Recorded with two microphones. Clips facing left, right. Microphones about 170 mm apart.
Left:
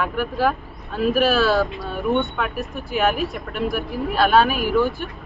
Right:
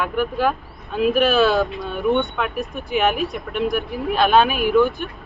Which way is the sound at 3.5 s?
20° right (ahead or behind).